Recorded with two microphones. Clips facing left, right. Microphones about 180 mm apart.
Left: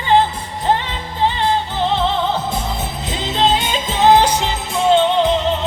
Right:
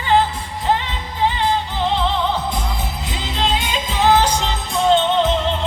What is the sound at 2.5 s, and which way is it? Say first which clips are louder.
Music: left 2 dB; 25° left (ahead or behind).